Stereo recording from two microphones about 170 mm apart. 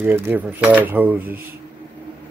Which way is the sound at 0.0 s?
10° right (ahead or behind).